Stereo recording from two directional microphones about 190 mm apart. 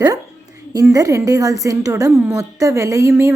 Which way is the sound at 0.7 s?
20° right (ahead or behind).